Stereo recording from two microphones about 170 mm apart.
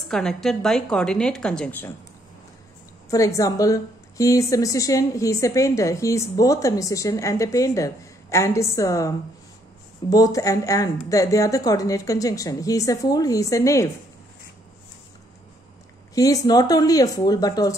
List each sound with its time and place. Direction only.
0.1 s a woman's voice: centre (ahead or behind)
3.1 s a woman's voice: 20° left (ahead or behind)
16.2 s a woman's voice: 20° left (ahead or behind)